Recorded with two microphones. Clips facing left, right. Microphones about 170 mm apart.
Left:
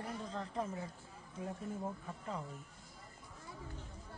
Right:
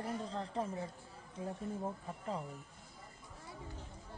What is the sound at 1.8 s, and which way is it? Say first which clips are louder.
Speech: right 2 dB; 30° right (ahead or behind).